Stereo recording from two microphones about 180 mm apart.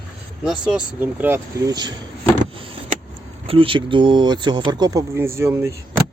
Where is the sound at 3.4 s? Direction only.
30° right (ahead or behind); by 5.7 s 15° right (ahead or behind).